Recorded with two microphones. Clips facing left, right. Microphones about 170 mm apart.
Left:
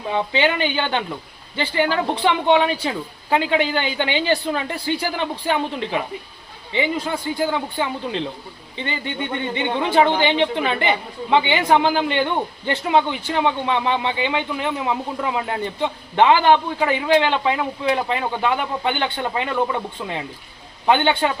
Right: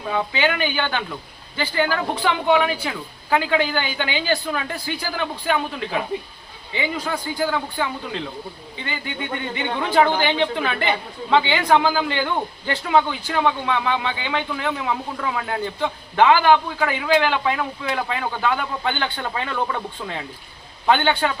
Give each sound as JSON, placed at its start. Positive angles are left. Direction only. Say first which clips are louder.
{"t": 0.1, "sound": "speech", "louder": "left 2 dB", "side_deg": 25}